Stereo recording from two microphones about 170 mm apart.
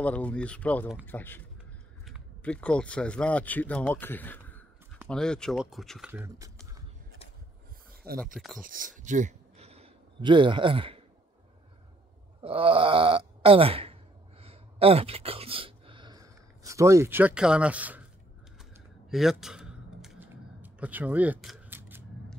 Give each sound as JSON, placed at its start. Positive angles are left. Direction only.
{"t": 0.0, "sound": "speech", "side_deg": 10}
{"t": 8.0, "sound": "speech", "side_deg": -65}
{"t": 8.6, "sound": "speech", "side_deg": -50}
{"t": 12.4, "sound": "groan", "side_deg": -35}
{"t": 14.4, "sound": "a sound", "side_deg": -35}
{"t": 19.0, "sound": "a sound", "side_deg": 0}